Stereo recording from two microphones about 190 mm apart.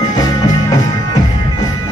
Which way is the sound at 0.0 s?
20° left (ahead or behind).